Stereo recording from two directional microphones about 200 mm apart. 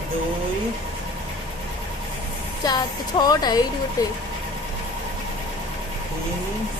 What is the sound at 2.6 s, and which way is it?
Speech, 20° left (ahead or behind).